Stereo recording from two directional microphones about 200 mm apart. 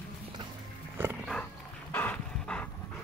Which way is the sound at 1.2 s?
5° left (ahead or behind).